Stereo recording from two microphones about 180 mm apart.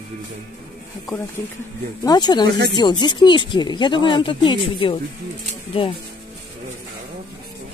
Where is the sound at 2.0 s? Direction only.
25° left (ahead or behind).